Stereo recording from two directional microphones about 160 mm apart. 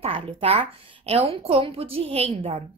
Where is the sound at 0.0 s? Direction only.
40° right (ahead or behind).